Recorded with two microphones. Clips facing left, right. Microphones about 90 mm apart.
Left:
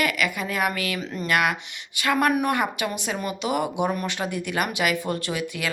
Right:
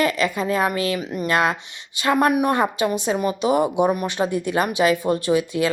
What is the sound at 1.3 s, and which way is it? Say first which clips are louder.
Speech: right 2 dB; 30° right (ahead or behind).